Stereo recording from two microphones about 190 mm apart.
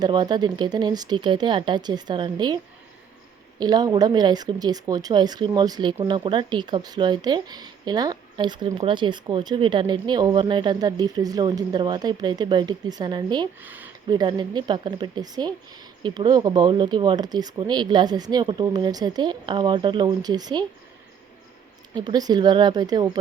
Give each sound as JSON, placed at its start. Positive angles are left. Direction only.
{"t": 0.0, "sound": "speech", "side_deg": -20}
{"t": 3.6, "sound": "speech", "side_deg": -20}
{"t": 13.6, "sound": "speech", "side_deg": -10}
{"t": 14.1, "sound": "speech", "side_deg": -25}
{"t": 21.9, "sound": "speech", "side_deg": -20}